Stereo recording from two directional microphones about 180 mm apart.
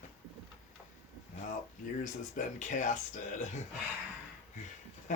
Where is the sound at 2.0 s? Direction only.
45° left (ahead or behind).